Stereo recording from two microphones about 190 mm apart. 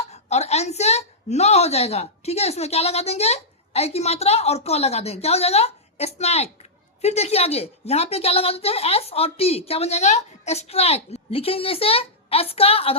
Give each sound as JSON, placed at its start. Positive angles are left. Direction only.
{"t": 0.1, "sound": "a woman's voice", "side_deg": 35}